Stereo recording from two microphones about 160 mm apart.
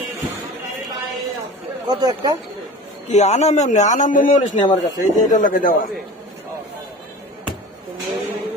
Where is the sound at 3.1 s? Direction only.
45° left (ahead or behind).